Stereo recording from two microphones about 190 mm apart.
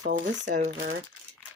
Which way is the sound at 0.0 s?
40° right (ahead or behind).